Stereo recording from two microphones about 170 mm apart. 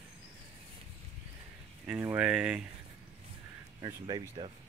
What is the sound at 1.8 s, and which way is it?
Speech, 15° right (ahead or behind).